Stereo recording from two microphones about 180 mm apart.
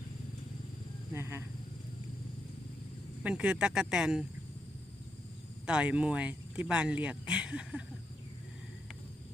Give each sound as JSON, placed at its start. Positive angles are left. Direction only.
{"t": 1.1, "sound": "a sound", "side_deg": -15}
{"t": 3.2, "sound": "speech", "side_deg": -5}
{"t": 5.6, "sound": "speech", "side_deg": -5}